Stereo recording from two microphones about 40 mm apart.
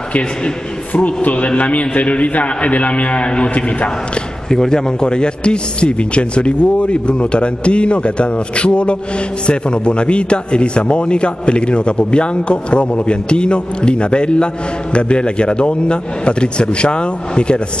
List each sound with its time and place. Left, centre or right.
0.9 s a man's voice: left
4.5 s a man's voice: centre